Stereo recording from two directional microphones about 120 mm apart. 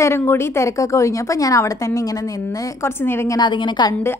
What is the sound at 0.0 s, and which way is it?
A woman's voice, 20° left (ahead or behind).